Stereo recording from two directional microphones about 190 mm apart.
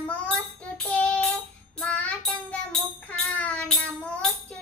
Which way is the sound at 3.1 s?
5° left (ahead or behind).